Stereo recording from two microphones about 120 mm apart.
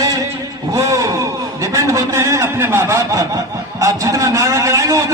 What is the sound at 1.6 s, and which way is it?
A man's voice, 25° right (ahead or behind).